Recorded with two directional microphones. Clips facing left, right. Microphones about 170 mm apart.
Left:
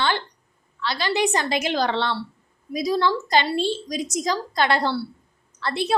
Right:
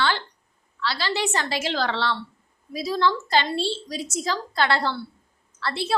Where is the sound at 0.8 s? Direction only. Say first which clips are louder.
Left 3 dB; 20° left (ahead or behind).